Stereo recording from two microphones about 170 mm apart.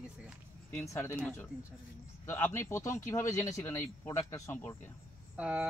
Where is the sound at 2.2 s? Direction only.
15° left (ahead or behind).